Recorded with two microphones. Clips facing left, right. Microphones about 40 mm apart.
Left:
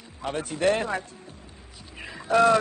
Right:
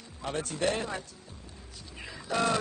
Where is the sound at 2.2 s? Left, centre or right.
Left.